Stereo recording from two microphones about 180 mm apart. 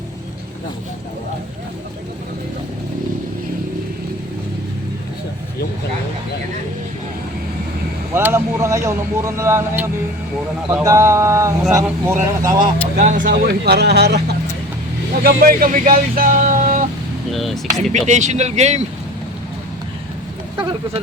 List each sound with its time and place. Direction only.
8.1 s speech: 15° right (ahead or behind)
13.0 s speech: 45° right (ahead or behind); by 14.2 s 65° right (ahead or behind)
15.2 s speech: 55° right (ahead or behind)
17.3 s speech: centre (ahead or behind)
17.9 s speech: 40° right (ahead or behind)